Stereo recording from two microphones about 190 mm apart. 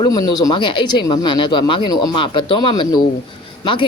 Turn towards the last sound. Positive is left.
turn(degrees=25)  # may be behind; listen again after turning